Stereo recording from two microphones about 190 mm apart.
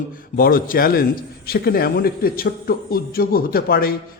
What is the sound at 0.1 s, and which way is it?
A man's voice, 50° left (ahead or behind).